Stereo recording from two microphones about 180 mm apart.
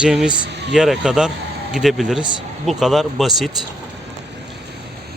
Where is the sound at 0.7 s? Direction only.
5° right (ahead or behind).